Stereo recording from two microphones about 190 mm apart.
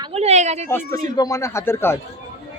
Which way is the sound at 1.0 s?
20° left (ahead or behind).